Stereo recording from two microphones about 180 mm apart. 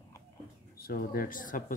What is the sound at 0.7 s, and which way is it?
Speech, 55° left (ahead or behind).